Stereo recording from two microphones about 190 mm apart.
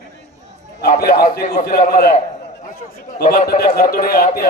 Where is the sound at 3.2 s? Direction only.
50° left (ahead or behind).